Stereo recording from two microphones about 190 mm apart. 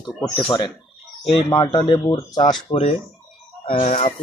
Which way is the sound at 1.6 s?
25° left (ahead or behind).